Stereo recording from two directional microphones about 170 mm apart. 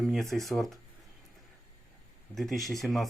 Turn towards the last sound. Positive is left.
turn(degrees=0)  # may be behind; listen again after turning